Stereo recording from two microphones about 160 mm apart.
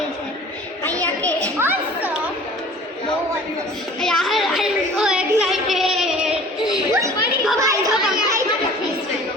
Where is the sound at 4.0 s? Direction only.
Centre (ahead or behind).